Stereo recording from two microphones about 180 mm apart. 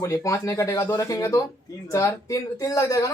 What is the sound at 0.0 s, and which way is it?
A man's voice, 20° left (ahead or behind).